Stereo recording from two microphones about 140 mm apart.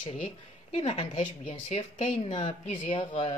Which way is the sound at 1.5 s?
40° left (ahead or behind).